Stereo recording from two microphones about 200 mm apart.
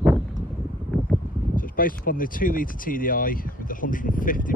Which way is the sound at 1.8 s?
45° left (ahead or behind).